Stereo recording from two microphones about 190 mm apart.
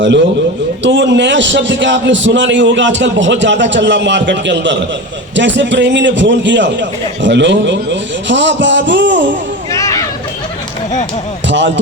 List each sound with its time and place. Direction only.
0.8 s a man's voice: 70° right (ahead or behind)
9.7 s a sound: 15° left (ahead or behind)
11.4 s a man's voice: 70° right (ahead or behind)